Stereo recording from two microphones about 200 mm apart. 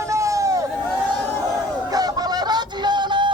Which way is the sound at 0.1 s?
15° right (ahead or behind).